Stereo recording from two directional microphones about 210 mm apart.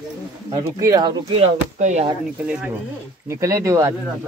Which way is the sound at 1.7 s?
35° right (ahead or behind).